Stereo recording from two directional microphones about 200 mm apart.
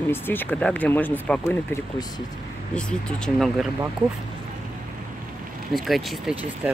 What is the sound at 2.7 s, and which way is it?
Speech, centre (ahead or behind).